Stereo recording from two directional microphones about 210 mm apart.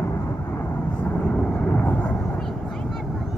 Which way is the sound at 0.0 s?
15° left (ahead or behind).